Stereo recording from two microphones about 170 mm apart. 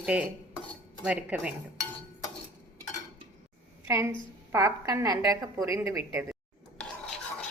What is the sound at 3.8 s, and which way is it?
A woman's voice, 15° right (ahead or behind).